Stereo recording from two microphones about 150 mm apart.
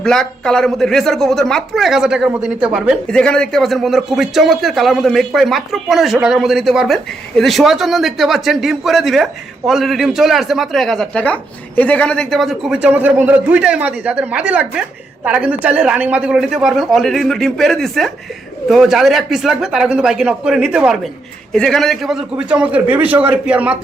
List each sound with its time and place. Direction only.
0.0 s a man's voice: 5° left (ahead or behind)
3.1 s a man's voice: 5° left (ahead or behind)